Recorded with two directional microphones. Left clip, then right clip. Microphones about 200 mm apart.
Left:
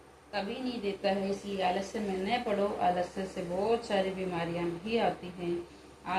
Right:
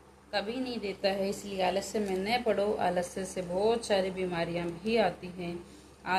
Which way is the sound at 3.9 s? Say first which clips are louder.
Right 2 dB; 50° right (ahead or behind).